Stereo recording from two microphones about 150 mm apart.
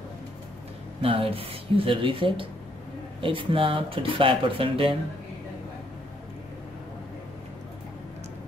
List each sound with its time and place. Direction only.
1.0 s speech: 40° right (ahead or behind)